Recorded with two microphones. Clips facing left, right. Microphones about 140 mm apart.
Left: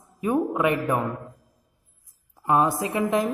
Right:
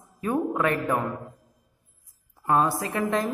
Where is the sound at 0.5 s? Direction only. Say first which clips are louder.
Left 2 dB; 20° left (ahead or behind).